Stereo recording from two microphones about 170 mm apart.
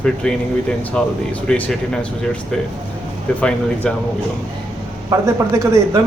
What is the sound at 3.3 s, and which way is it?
Speech, 5° left (ahead or behind).